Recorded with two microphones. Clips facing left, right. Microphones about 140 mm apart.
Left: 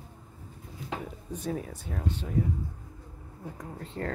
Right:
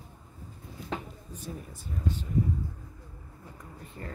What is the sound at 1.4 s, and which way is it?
Speech, 75° left (ahead or behind).